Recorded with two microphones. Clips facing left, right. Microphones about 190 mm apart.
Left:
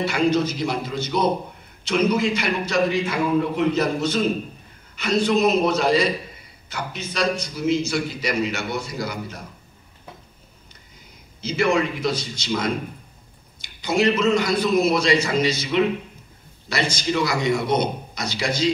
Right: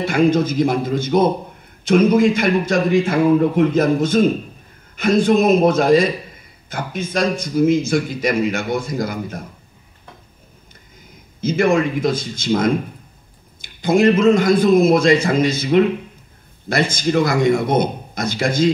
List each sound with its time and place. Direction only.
0.0 s a man's voice: 50° right (ahead or behind)
11.4 s a man's voice: 50° right (ahead or behind)